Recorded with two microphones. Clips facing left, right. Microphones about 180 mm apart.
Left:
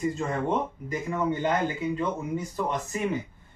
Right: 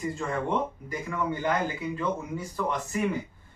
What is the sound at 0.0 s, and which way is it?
Speech, 20° left (ahead or behind).